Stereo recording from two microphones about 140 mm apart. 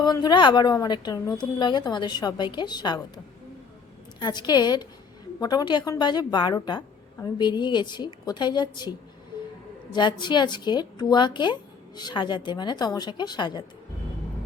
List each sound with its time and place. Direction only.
0.0 s a woman's voice: 30° left (ahead or behind)
4.2 s a woman's voice: 30° left (ahead or behind)